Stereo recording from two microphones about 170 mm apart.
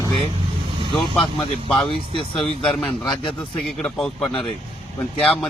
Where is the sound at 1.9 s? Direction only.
30° left (ahead or behind).